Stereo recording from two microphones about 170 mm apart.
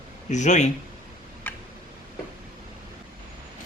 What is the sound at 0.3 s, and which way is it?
Speech, 45° left (ahead or behind).